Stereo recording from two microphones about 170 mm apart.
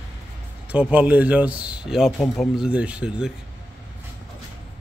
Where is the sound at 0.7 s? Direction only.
10° right (ahead or behind).